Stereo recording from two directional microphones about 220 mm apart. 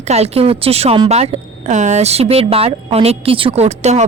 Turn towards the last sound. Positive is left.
turn(degrees=-30)  # may be behind; listen again after turning